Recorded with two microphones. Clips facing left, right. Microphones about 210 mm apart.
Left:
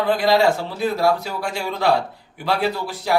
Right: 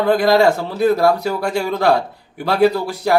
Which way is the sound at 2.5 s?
50° right (ahead or behind).